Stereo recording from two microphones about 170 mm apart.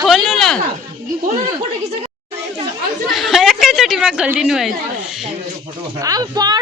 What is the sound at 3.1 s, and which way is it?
A woman's voice, centre (ahead or behind).